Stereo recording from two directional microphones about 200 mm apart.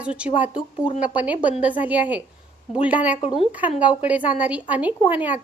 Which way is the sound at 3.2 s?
30° left (ahead or behind).